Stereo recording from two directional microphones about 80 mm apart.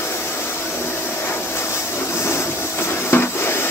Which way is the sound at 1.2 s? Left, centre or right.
Left.